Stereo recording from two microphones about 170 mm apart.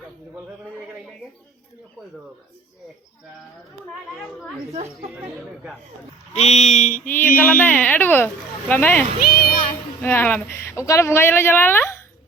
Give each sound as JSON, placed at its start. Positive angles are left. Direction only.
{"t": 4.7, "sound": "chatter", "side_deg": -40}
{"t": 6.3, "sound": "speech", "side_deg": 40}
{"t": 7.0, "sound": "mantra", "side_deg": 10}
{"t": 7.3, "sound": "speech", "side_deg": 10}
{"t": 9.2, "sound": "children playing", "side_deg": 60}
{"t": 10.0, "sound": "a woman's voice", "side_deg": 10}